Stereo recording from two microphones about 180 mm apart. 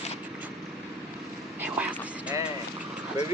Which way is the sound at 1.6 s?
10° right (ahead or behind).